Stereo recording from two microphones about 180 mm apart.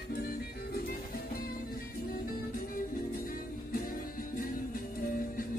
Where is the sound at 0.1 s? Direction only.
60° left (ahead or behind).